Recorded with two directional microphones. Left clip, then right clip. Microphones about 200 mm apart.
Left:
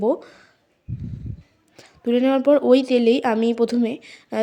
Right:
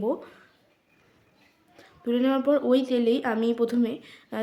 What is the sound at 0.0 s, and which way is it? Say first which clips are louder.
Speech: left 7 dB; 25° left (ahead or behind).